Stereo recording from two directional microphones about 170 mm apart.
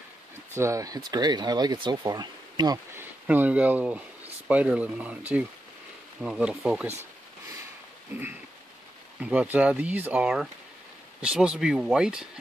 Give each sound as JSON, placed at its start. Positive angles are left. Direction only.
{"t": 0.6, "sound": "speech", "side_deg": -20}
{"t": 3.0, "sound": "speech", "side_deg": -10}
{"t": 8.1, "sound": "speech", "side_deg": -10}